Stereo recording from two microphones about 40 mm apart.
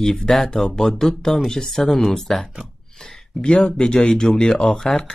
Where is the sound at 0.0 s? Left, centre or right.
Centre.